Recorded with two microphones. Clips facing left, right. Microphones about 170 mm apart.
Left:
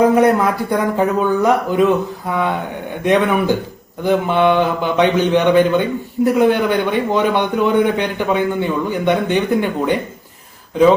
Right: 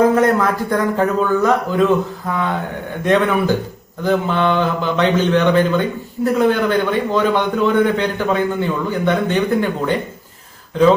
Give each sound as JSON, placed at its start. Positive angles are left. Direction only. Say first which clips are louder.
{"t": 0.0, "sound": "a man's voice", "louder": "left 1 dB", "side_deg": 15}
{"t": 3.0, "sound": "a man's voice", "louder": "left 1 dB", "side_deg": 15}